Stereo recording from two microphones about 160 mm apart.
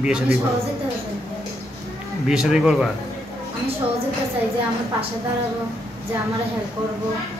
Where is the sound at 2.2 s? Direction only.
5° right (ahead or behind).